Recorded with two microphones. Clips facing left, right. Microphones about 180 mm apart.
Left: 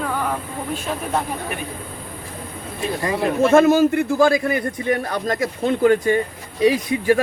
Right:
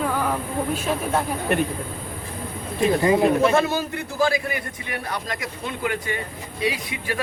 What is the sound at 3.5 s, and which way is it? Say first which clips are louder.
Speech: left 9 dB; 45° left (ahead or behind).